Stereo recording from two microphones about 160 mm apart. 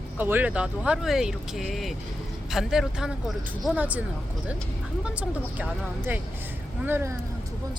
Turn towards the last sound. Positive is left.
turn(degrees=-15)  # may be behind; listen again after turning